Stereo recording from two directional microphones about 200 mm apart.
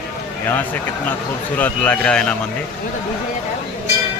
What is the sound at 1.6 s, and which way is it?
Speech, 10° left (ahead or behind).